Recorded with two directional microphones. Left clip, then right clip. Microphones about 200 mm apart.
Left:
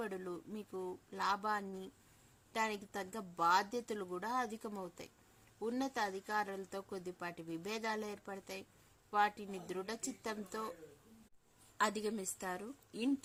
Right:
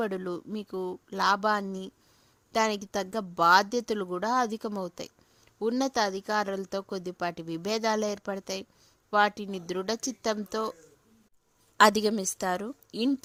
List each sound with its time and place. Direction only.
0.0 s speech: 50° right (ahead or behind)
11.8 s speech: 55° right (ahead or behind)